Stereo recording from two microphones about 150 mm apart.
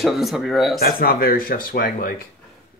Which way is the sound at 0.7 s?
85° left.